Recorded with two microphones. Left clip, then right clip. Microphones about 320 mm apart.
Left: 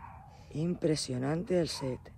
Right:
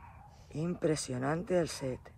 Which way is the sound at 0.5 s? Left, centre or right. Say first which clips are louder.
Left 1 dB; centre.